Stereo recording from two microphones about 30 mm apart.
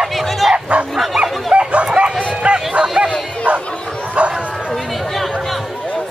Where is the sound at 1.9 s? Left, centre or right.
Right.